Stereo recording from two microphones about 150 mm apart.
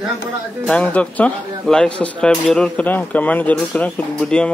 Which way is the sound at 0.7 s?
10° left (ahead or behind).